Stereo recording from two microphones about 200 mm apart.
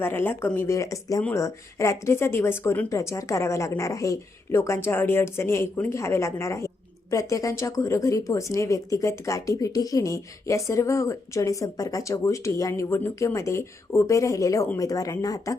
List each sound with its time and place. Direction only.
0.0 s speech: 10° left (ahead or behind)